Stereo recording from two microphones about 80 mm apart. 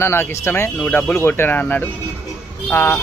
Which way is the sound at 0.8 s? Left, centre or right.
Left.